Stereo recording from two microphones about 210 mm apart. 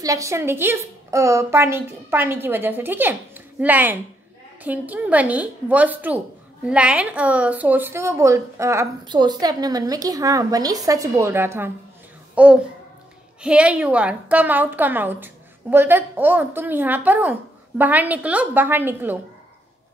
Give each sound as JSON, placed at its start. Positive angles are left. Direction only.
{"t": 0.0, "sound": "a woman's voice", "side_deg": -15}